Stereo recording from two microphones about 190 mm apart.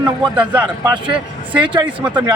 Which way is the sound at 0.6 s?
25° right (ahead or behind).